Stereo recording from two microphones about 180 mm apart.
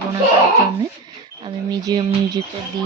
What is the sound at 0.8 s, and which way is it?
Speech, 20° right (ahead or behind).